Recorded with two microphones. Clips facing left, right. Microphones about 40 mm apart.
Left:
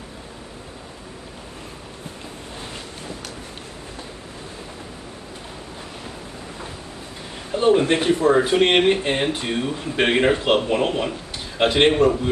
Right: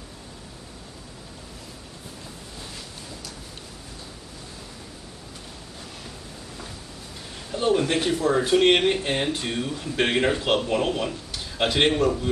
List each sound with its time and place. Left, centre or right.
7.5 s speech: left